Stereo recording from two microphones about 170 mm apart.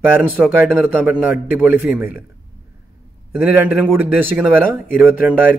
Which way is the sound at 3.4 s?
10° right (ahead or behind).